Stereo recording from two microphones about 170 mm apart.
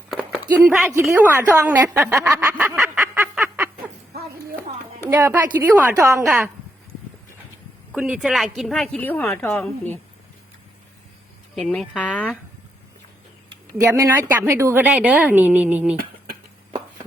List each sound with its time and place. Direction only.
0.1 s a sound: centre (ahead or behind)
0.7 s a woman's voice: centre (ahead or behind)
1.2 s a woman's voice: 15° right (ahead or behind)
2.7 s a sound: 5° right (ahead or behind)
5.0 s a woman's voice: 10° right (ahead or behind)
7.9 s a woman's voice: 5° right (ahead or behind); by 10.0 s 10° left (ahead or behind)
11.5 s speech: centre (ahead or behind)
13.7 s a woman's voice: 15° right (ahead or behind)
16.0 s a sound: 60° right (ahead or behind)